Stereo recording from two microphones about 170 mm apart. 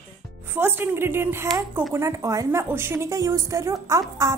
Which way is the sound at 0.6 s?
10° right (ahead or behind).